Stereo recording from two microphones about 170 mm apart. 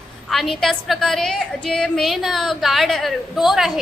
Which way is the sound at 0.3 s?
Centre (ahead or behind).